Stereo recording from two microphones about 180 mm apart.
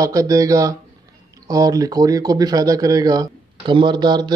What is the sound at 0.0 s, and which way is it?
Speech, 20° right (ahead or behind).